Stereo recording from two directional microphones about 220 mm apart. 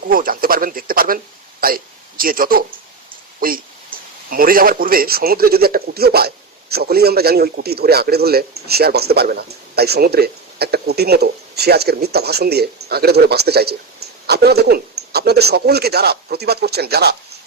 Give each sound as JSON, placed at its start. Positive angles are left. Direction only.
{"t": 0.1, "sound": "a man's voice", "side_deg": -40}